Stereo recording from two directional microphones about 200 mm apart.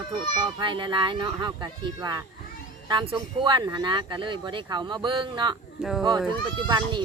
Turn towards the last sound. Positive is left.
turn(degrees=-20)  # may be behind; listen again after turning